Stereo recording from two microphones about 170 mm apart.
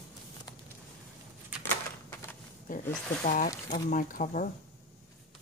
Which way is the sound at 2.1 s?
15° left (ahead or behind).